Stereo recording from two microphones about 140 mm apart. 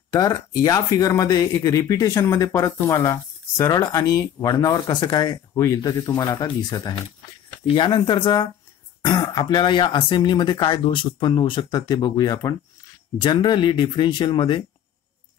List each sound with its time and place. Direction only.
0.1 s speech: 25° left (ahead or behind)